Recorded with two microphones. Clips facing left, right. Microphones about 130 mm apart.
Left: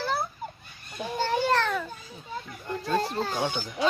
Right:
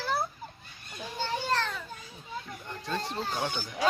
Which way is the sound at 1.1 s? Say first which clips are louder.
Left 6 dB; 60° left (ahead or behind).